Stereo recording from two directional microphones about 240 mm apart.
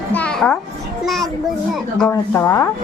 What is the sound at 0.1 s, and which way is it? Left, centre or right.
Music, centre.